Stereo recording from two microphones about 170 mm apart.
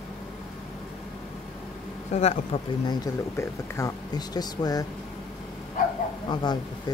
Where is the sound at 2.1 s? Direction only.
40° left (ahead or behind).